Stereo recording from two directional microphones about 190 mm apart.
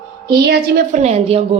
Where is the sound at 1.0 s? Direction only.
35° right (ahead or behind).